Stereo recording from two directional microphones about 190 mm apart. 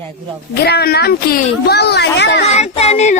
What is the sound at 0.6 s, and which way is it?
A woman's voice, 60° left (ahead or behind).